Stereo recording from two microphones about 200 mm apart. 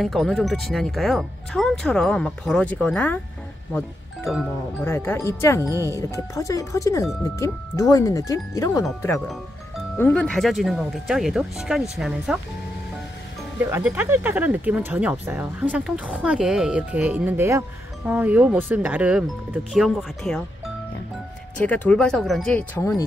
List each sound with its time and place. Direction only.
0.0 s speech: centre (ahead or behind)
4.8 s speech: 10° left (ahead or behind)
9.9 s speech: 5° left (ahead or behind)
13.7 s speech: 10° right (ahead or behind)
21.5 s speech: 5° left (ahead or behind)